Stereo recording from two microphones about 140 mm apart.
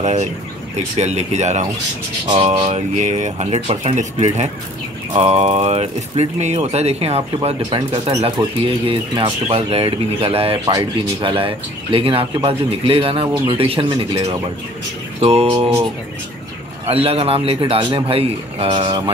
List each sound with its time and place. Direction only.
0.0 s speech: 55° right (ahead or behind)
2.2 s a man's voice: 40° right (ahead or behind)
8.4 s a man's voice: 30° right (ahead or behind)
10.6 s speech: 25° right (ahead or behind)
11.1 s a man's voice: 40° right (ahead or behind)
16.9 s a man's voice: 45° right (ahead or behind)